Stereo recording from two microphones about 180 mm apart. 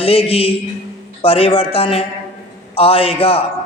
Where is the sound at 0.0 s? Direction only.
30° left (ahead or behind).